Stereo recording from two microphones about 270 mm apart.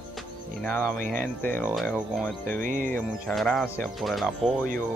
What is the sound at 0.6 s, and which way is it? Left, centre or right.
Speech, centre.